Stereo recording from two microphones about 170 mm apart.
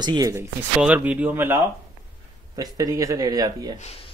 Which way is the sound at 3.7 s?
35° left (ahead or behind).